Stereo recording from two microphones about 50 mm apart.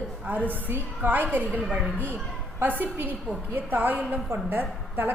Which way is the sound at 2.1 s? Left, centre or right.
Centre.